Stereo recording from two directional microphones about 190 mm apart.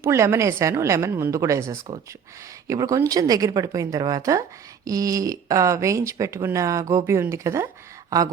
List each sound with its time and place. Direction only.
0.0 s a woman's voice: 15° right (ahead or behind)